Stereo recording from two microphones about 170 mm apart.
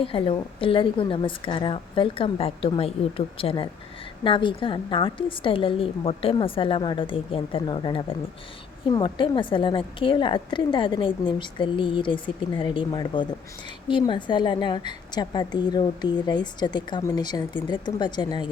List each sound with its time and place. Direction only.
0.0 s a woman's voice: 30° left (ahead or behind)